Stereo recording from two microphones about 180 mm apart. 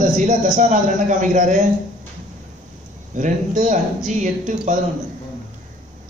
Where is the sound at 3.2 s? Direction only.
45° right (ahead or behind).